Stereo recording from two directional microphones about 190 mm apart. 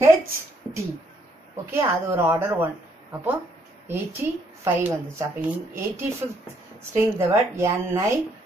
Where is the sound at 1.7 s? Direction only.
10° right (ahead or behind).